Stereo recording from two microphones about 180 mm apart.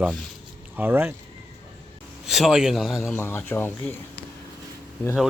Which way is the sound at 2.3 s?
Centre (ahead or behind).